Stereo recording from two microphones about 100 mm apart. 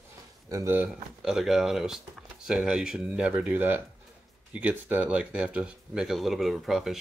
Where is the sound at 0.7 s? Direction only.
15° right (ahead or behind).